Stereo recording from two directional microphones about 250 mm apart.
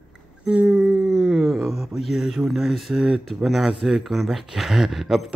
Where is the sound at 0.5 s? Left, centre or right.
Centre.